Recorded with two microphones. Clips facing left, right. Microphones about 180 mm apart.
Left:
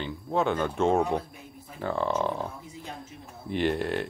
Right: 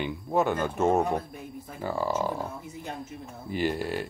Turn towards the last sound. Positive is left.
turn(degrees=-5)  # may be behind; listen again after turning